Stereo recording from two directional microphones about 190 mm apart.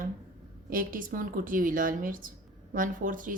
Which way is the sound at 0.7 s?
45° right (ahead or behind).